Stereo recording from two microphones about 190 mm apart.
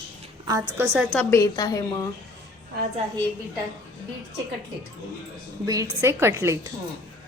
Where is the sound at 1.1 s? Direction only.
15° left (ahead or behind).